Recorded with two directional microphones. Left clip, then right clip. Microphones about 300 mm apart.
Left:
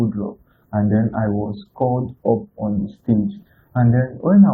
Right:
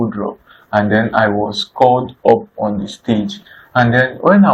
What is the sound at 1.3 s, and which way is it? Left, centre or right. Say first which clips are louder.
Speech: right 10 dB; right.